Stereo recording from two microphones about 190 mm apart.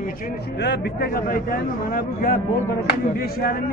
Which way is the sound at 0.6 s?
55° left (ahead or behind).